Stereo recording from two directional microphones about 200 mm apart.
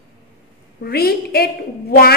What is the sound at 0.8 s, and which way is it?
Speech, 50° left (ahead or behind).